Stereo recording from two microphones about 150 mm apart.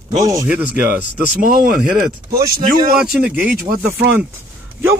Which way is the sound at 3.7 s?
45° right (ahead or behind).